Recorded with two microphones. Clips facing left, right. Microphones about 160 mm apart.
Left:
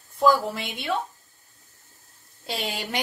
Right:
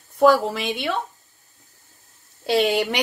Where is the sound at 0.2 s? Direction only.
80° right.